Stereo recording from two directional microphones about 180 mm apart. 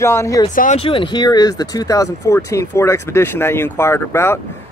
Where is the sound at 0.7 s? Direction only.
30° left (ahead or behind).